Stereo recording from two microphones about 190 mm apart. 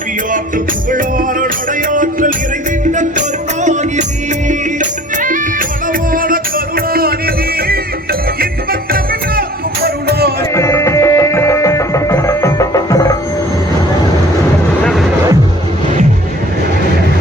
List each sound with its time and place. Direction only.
0.5 s music: 45° right (ahead or behind)
9.8 s music: 55° right (ahead or behind)
10.5 s music: 15° left (ahead or behind)